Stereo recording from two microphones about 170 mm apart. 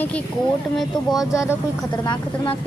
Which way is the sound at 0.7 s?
Centre (ahead or behind).